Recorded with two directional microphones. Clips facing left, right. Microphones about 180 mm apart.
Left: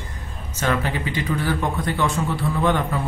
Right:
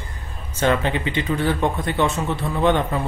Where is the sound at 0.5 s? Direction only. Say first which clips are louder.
Right 3 dB; 25° right (ahead or behind).